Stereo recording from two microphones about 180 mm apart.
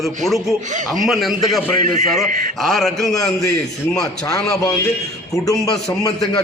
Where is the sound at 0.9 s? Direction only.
Centre (ahead or behind).